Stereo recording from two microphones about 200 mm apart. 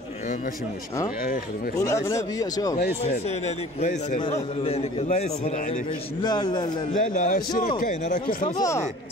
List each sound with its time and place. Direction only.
1.8 s speech: 15° left (ahead or behind)
3.1 s a man's voice: 35° left (ahead or behind)
6.2 s a man's voice: 20° left (ahead or behind)
7.0 s a man's voice: 40° left (ahead or behind)
8.5 s speech: 15° left (ahead or behind)